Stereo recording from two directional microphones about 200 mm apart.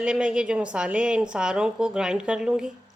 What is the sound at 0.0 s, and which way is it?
A woman's voice, 5° right (ahead or behind).